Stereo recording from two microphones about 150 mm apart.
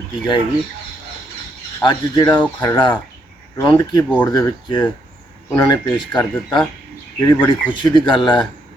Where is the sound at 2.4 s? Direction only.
15° left (ahead or behind).